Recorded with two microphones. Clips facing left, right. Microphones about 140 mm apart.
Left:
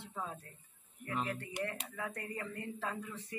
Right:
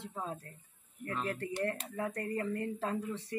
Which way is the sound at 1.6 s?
40° right (ahead or behind).